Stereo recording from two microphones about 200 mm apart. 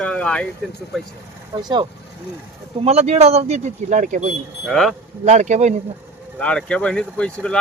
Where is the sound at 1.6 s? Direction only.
20° right (ahead or behind).